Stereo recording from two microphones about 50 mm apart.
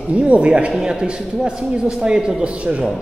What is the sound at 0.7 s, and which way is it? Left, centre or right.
A man's voice, centre.